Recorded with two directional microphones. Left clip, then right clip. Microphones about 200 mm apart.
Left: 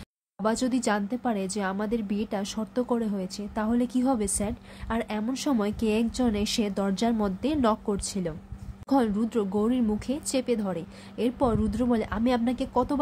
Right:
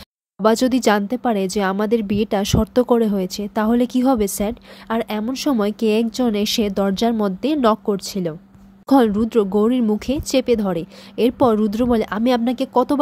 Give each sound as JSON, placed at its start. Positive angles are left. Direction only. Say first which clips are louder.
{"t": 0.4, "sound": "speech", "louder": "right 11 dB", "side_deg": -45}
{"t": 8.8, "sound": "speech", "louder": "right 10 dB", "side_deg": -45}